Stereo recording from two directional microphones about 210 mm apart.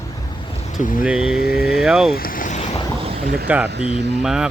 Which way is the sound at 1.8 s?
Centre (ahead or behind).